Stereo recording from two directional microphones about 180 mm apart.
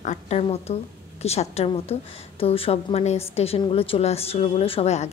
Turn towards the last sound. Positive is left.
turn(degrees=35)  # may be behind; listen again after turning